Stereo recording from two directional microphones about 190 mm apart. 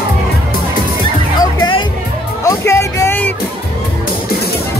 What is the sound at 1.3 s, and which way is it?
Music, 20° left (ahead or behind).